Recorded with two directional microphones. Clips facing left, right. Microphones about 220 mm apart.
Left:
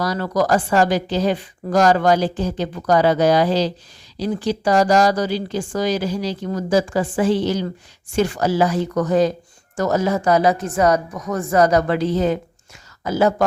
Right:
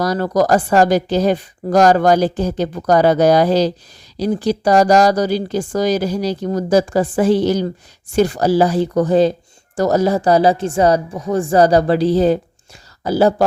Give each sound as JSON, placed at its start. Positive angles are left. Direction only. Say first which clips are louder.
{"t": 0.0, "sound": "a woman's voice", "louder": "right 4 dB", "side_deg": -40}